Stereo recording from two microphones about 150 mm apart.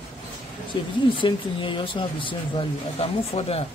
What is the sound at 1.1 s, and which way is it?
Speech, 35° left (ahead or behind).